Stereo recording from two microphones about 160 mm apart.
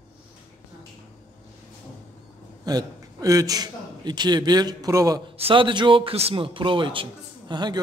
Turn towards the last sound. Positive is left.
turn(degrees=-25)  # may be behind; listen again after turning